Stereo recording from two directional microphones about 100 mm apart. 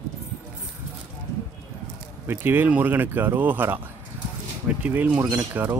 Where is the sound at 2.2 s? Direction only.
20° right (ahead or behind).